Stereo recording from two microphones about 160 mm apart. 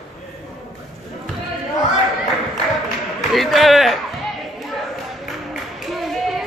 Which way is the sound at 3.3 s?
Centre (ahead or behind).